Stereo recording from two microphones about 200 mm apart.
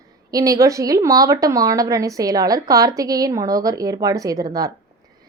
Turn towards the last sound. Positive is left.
turn(degrees=-15)  # may be behind; listen again after turning